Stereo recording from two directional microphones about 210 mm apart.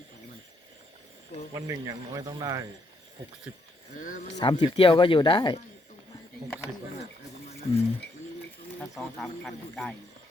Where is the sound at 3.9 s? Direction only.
40° left (ahead or behind).